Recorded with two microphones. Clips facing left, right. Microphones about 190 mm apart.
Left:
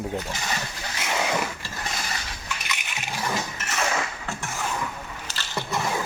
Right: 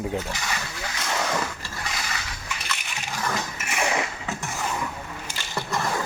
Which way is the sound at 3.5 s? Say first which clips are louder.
Right 1 dB; 10° right (ahead or behind).